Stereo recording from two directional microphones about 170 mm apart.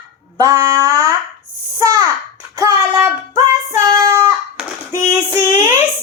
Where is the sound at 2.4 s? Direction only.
15° right (ahead or behind).